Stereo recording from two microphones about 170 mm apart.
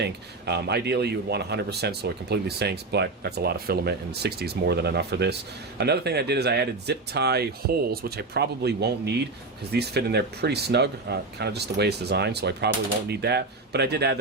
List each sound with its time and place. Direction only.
0.0 s speech: 75° right (ahead or behind)